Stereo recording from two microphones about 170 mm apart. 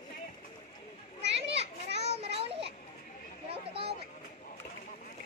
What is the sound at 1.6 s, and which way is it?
Children playing, 40° right (ahead or behind).